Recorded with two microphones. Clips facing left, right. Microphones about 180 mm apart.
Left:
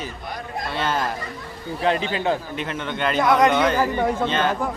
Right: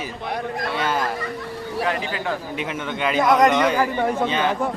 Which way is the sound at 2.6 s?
5° right (ahead or behind).